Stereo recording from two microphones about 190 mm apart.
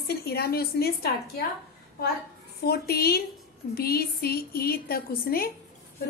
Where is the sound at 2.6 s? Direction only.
55° left (ahead or behind).